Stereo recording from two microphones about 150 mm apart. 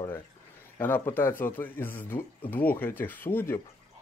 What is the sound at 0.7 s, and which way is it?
Speech, 15° left (ahead or behind).